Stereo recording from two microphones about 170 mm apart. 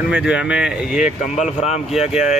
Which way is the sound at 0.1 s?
5° right (ahead or behind).